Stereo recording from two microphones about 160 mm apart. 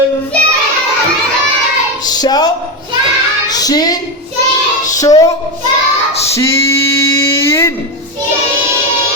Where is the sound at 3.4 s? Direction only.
25° left (ahead or behind).